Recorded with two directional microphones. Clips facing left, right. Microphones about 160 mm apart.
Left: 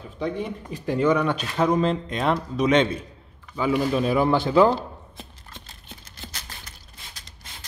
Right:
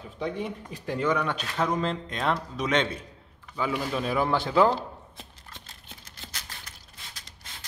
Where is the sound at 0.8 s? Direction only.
10° left (ahead or behind).